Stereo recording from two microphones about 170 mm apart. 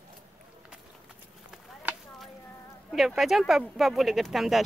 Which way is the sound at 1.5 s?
Centre (ahead or behind).